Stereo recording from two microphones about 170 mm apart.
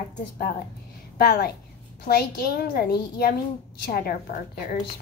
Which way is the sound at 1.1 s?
65° left (ahead or behind).